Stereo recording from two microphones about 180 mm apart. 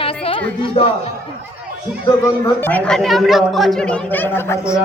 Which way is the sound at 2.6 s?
10° left (ahead or behind).